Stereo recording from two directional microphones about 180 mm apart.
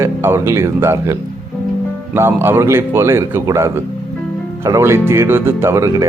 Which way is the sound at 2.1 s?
15° right (ahead or behind).